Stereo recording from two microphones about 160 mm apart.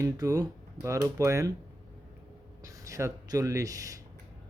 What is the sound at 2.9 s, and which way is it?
Speech, 20° right (ahead or behind).